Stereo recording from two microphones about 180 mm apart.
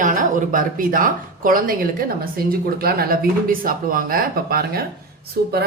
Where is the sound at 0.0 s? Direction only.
45° right (ahead or behind).